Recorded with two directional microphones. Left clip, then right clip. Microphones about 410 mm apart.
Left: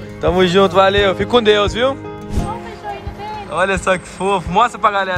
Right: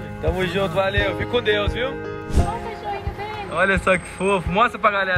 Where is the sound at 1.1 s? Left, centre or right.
Centre.